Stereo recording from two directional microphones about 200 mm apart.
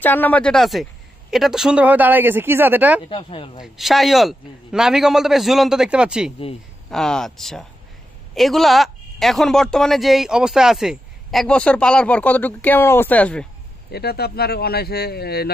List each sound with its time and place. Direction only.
0.0 s a man's voice: 10° left (ahead or behind); by 3.0 s 10° right (ahead or behind)
3.1 s speech: 25° left (ahead or behind)
3.6 s a man's voice: centre (ahead or behind)
13.9 s speech: 50° left (ahead or behind)